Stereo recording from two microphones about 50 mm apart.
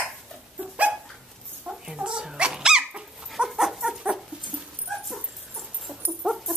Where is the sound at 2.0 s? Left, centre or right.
Centre.